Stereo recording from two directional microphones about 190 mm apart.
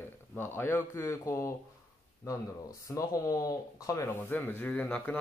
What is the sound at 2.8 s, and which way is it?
Speech, 15° left (ahead or behind).